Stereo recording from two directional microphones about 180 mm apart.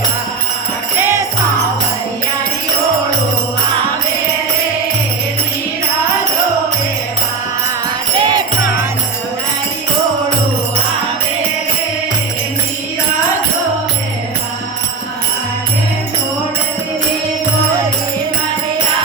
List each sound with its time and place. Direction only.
8.2 s jingle bell: 25° right (ahead or behind)